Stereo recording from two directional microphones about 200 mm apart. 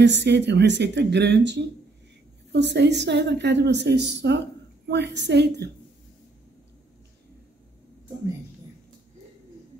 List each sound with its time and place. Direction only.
0.0 s a woman's voice: 60° right (ahead or behind)